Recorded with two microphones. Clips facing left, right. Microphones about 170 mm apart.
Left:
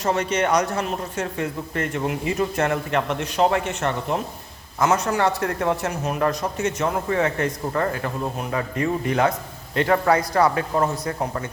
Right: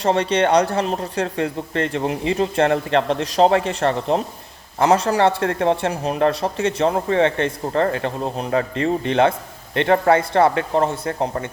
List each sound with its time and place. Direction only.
0.0 s a man's voice: 30° right (ahead or behind)